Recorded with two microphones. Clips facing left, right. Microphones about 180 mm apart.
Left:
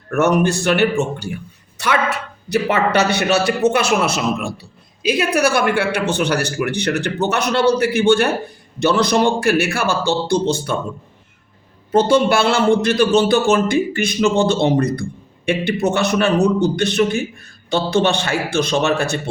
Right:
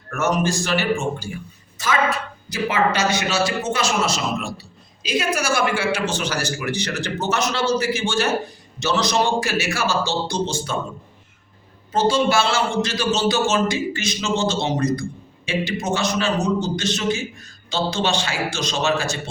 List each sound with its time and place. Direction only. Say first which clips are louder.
0.1 s a man's voice: left 6 dB; 60° left (ahead or behind)
11.9 s a man's voice: left 5 dB; 60° left (ahead or behind)